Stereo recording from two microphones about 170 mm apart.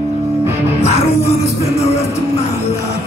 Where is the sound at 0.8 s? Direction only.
40° left (ahead or behind).